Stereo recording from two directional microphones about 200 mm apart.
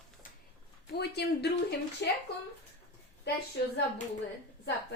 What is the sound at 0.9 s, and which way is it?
A woman's voice, 55° left (ahead or behind).